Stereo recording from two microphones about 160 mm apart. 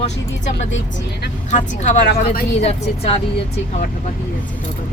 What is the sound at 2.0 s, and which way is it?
Speech, 70° left (ahead or behind).